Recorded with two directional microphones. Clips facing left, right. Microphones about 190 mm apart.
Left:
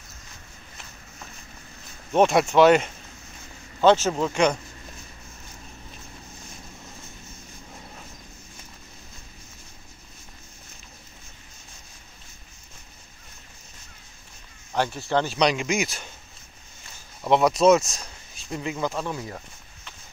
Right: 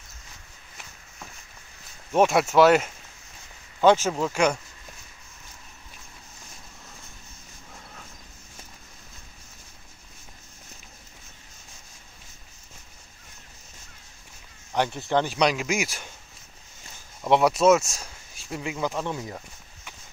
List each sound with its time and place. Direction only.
2.1 s speech: 5° right (ahead or behind)
14.7 s speech: 15° right (ahead or behind)
17.3 s speech: 10° right (ahead or behind)